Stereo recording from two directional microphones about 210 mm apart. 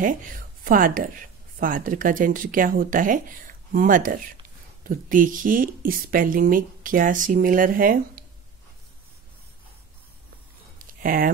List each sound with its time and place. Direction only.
0.7 s speech: 40° right (ahead or behind)
11.0 s speech: 40° right (ahead or behind)